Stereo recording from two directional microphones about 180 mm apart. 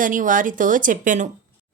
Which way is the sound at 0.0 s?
45° right (ahead or behind).